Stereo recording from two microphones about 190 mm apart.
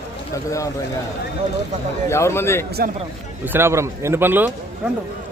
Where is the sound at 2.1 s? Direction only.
15° left (ahead or behind).